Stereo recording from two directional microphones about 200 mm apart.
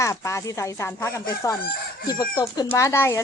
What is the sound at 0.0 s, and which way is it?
Speech, 15° left (ahead or behind).